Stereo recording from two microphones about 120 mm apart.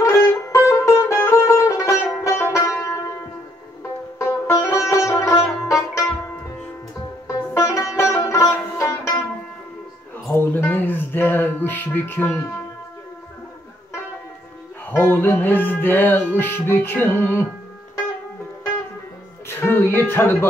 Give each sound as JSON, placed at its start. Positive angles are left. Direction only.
{"t": 0.0, "sound": "music", "side_deg": 25}
{"t": 4.2, "sound": "music", "side_deg": 25}
{"t": 10.3, "sound": "a sound", "side_deg": 20}
{"t": 14.9, "sound": "music", "side_deg": 20}
{"t": 19.4, "sound": "speech", "side_deg": 20}